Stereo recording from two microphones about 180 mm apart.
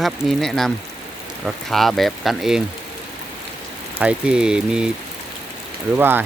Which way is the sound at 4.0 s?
5° right (ahead or behind).